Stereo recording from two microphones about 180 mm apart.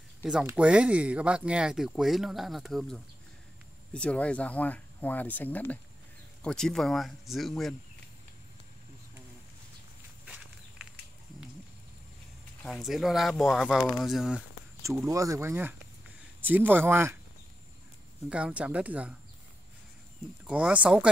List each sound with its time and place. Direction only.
0.2 s speech: 5° right (ahead or behind)
10.2 s walk: 5° right (ahead or behind)
12.6 s speech: centre (ahead or behind)
14.8 s speech: 15° right (ahead or behind)
18.3 s speech: 5° right (ahead or behind)
20.4 s speech: 5° right (ahead or behind)